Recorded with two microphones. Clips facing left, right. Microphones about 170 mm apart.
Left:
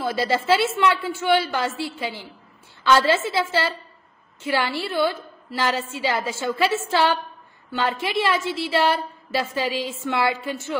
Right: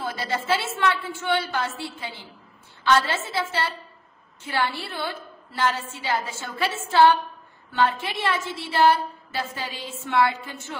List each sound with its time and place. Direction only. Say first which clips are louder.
0.3 s a woman's voice: left 5 dB; 90° left